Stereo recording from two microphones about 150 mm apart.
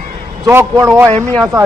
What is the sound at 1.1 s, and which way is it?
Speech, 5° left (ahead or behind).